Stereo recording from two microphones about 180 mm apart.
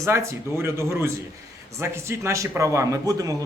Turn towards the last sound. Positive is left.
turn(degrees=-20)  # may be behind; listen again after turning